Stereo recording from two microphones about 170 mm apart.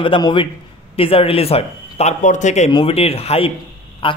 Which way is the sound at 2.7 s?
30° left (ahead or behind).